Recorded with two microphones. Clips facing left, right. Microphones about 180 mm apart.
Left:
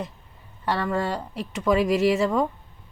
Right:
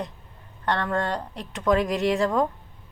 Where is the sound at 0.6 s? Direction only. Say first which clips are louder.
Even; 5° left (ahead or behind).